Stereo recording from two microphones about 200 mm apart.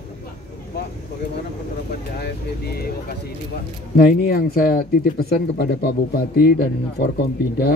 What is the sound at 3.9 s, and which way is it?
Speech, 45° left (ahead or behind).